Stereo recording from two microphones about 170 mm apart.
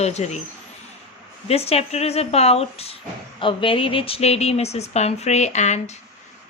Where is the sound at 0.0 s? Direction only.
40° left (ahead or behind).